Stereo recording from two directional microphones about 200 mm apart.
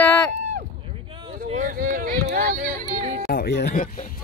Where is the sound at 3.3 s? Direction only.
55° left (ahead or behind).